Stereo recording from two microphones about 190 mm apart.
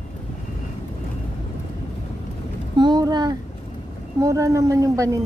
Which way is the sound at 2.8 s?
20° right (ahead or behind).